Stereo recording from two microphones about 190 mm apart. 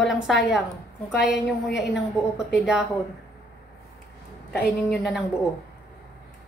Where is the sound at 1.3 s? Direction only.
65° left (ahead or behind).